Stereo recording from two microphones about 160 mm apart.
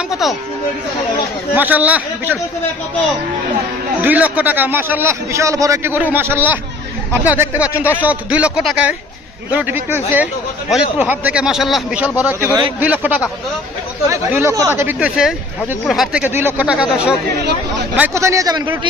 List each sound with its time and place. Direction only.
0.1 s speech: centre (ahead or behind)
1.5 s speech: 10° right (ahead or behind)
4.0 s a man's voice: 10° right (ahead or behind); by 18.7 s 25° right (ahead or behind)